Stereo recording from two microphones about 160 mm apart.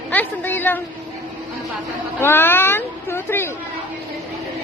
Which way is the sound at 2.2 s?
15° left (ahead or behind).